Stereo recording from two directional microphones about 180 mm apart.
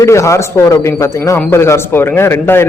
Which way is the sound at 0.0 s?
15° left (ahead or behind).